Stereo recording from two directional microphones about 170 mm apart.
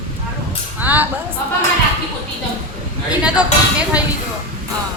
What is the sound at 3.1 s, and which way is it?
Speech, 5° right (ahead or behind).